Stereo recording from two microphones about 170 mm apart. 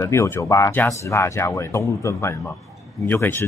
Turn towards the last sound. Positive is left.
turn(degrees=10)  # may be behind; listen again after turning